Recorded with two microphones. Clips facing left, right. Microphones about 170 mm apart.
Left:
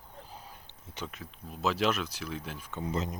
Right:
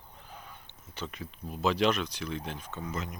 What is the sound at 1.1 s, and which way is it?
Speech, centre (ahead or behind).